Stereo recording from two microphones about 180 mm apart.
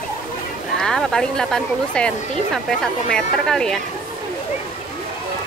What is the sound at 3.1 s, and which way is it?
Speech, 5° left (ahead or behind).